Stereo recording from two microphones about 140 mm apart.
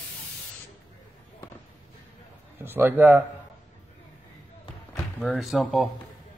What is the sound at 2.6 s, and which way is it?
Speech, 15° right (ahead or behind).